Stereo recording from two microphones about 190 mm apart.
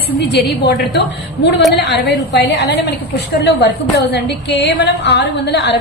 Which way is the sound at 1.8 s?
60° left (ahead or behind).